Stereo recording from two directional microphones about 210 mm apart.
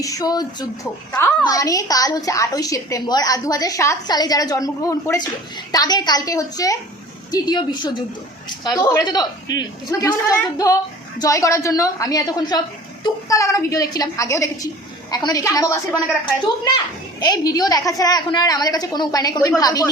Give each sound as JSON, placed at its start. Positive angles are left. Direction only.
{"t": 0.0, "sound": "a woman's voice", "side_deg": 15}